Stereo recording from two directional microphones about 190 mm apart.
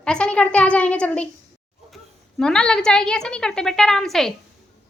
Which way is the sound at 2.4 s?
5° left (ahead or behind).